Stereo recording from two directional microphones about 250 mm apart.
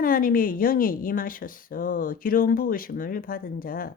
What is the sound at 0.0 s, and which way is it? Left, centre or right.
Speech, left.